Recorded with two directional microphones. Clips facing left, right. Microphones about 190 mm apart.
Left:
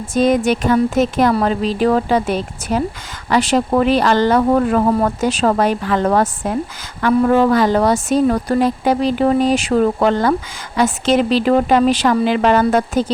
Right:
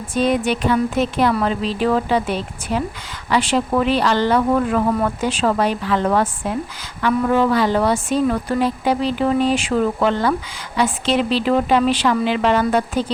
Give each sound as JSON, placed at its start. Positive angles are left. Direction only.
{"t": 0.1, "sound": "speech", "side_deg": 45}